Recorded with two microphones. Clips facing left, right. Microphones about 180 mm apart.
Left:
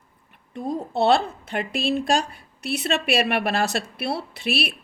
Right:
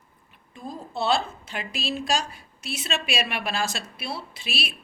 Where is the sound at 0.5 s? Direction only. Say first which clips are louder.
Left 8 dB; 65° left (ahead or behind).